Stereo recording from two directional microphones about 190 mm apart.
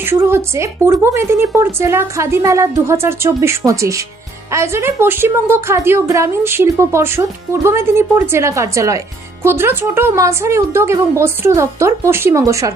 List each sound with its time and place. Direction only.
0.0 s a woman's voice: 10° right (ahead or behind)